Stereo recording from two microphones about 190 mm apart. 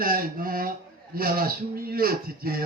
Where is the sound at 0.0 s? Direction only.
50° right (ahead or behind).